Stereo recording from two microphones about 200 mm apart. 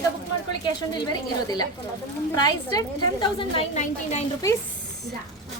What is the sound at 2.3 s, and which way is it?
A woman's voice, 20° left (ahead or behind).